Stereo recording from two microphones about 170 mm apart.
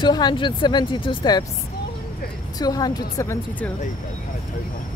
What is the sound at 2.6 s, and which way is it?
Speech, 25° left (ahead or behind).